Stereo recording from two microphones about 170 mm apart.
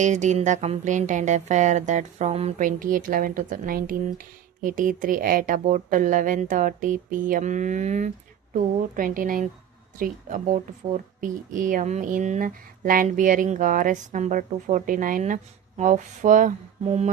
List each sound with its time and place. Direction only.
0.0 s speech: 45° right (ahead or behind)